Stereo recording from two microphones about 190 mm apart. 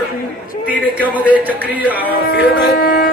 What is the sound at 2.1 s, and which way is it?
Speech, 55° left (ahead or behind).